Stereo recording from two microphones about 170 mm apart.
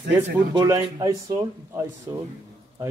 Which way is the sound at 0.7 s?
20° right (ahead or behind).